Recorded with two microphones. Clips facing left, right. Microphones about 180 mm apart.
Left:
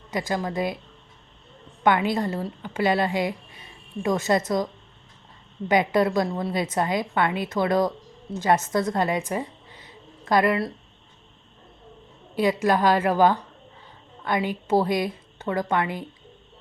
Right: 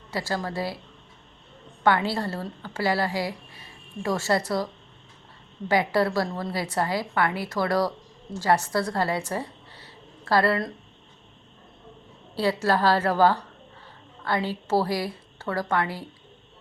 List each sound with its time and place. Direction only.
0.1 s a woman's voice: 15° left (ahead or behind)
1.8 s a woman's voice: 20° left (ahead or behind)
12.3 s a woman's voice: 15° left (ahead or behind)